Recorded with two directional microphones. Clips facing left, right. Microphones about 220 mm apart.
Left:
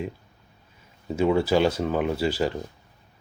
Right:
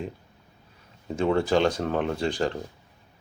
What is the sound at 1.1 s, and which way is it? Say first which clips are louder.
Speech: left 2 dB; 5° left (ahead or behind).